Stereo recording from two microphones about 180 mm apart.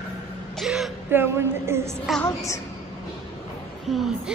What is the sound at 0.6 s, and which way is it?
Speech, 5° right (ahead or behind).